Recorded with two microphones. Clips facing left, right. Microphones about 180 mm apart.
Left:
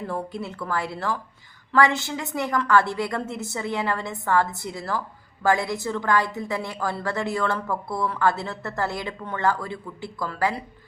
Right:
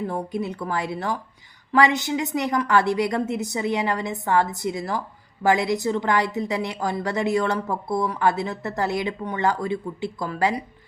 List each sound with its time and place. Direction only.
0.1 s a woman's voice: 20° right (ahead or behind)